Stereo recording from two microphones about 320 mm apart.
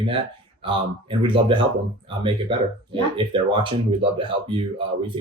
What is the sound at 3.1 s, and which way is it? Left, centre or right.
Speech, centre.